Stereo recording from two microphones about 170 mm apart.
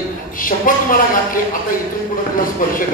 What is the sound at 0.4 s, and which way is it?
A woman's voice, 55° left (ahead or behind).